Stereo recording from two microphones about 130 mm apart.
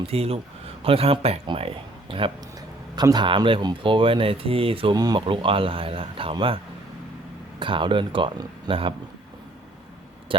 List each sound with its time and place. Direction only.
0.0 s speech: 50° right (ahead or behind)
2.6 s speech: 30° right (ahead or behind)
7.6 s speech: 40° right (ahead or behind)